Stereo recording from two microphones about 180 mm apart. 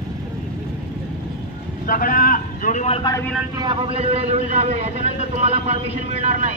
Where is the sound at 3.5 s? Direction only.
25° right (ahead or behind).